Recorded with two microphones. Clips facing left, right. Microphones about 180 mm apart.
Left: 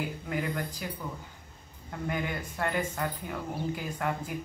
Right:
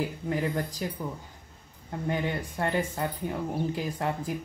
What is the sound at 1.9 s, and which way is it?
Speech, 30° right (ahead or behind).